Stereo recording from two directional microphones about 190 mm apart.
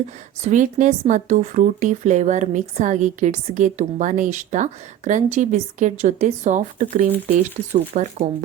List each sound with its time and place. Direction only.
0.4 s a woman's voice: 40° right (ahead or behind)